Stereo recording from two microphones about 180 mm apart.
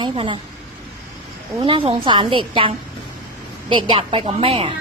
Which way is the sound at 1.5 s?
25° right (ahead or behind).